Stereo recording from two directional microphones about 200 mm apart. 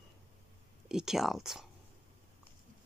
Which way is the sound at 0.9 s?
Centre (ahead or behind).